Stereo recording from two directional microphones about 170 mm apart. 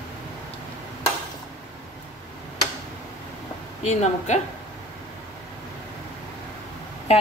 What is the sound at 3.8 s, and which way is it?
Speech, 40° left (ahead or behind).